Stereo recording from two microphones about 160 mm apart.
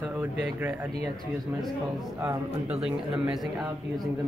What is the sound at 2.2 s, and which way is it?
Speech, 5° right (ahead or behind).